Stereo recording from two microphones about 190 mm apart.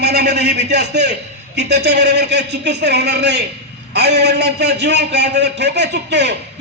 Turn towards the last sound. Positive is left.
turn(degrees=-65)  # may be behind; listen again after turning